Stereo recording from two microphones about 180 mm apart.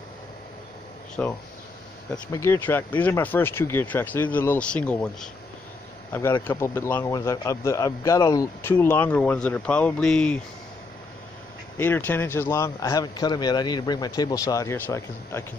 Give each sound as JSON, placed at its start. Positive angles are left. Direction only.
{"t": 1.2, "sound": "a man's voice", "side_deg": 10}
{"t": 6.4, "sound": "a man's voice", "side_deg": 15}
{"t": 11.7, "sound": "a man's voice", "side_deg": 10}